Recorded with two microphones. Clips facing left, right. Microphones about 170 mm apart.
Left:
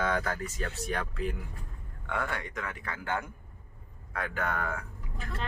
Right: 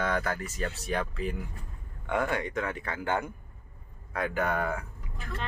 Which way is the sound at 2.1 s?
20° right (ahead or behind).